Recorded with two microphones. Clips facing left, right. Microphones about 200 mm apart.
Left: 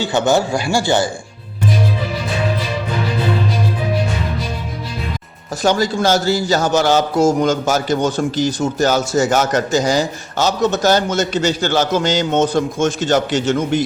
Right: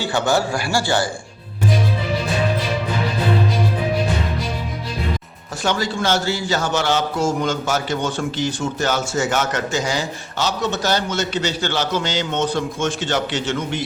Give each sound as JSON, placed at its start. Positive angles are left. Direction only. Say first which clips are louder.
{"t": 0.0, "sound": "speech", "louder": "left 4 dB", "side_deg": 20}
{"t": 5.6, "sound": "a man's voice", "louder": "left 5 dB", "side_deg": 40}